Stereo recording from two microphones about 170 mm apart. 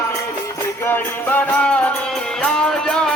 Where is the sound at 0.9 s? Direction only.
10° left (ahead or behind).